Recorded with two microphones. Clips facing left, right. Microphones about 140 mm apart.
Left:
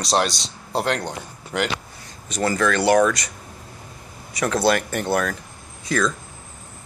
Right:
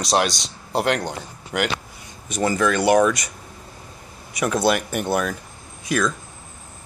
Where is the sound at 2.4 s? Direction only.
15° right (ahead or behind).